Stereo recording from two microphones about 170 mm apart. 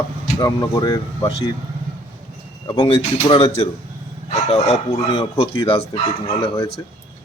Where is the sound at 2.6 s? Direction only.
30° left (ahead or behind).